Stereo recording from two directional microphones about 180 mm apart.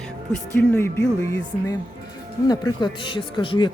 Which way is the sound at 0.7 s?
15° left (ahead or behind).